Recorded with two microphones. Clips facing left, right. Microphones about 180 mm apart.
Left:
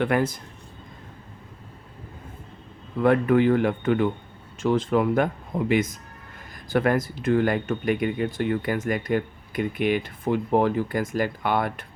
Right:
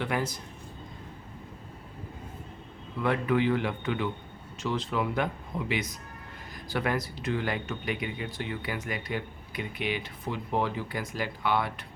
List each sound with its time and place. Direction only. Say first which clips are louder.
0.0 s speech: left 8 dB; 55° left (ahead or behind)
3.0 s speech: left 7 dB; 50° left (ahead or behind)